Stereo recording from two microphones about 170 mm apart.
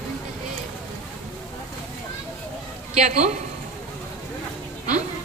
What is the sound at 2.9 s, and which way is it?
Speech, 45° right (ahead or behind).